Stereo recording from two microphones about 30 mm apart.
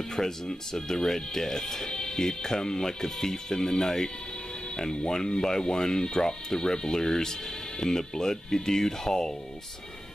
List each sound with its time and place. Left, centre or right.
0.1 s speech: centre
5.1 s speech: centre